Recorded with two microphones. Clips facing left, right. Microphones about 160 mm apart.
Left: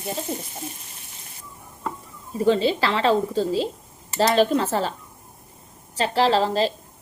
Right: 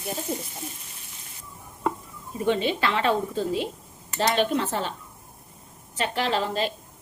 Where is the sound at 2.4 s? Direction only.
35° left (ahead or behind).